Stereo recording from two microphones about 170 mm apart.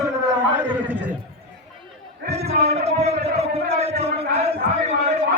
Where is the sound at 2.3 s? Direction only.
40° right (ahead or behind).